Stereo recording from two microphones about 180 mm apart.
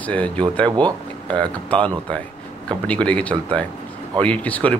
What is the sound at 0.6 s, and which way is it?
Speech, 25° right (ahead or behind).